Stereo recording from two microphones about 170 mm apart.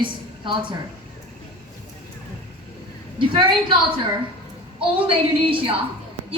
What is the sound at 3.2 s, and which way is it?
Speech, 30° right (ahead or behind).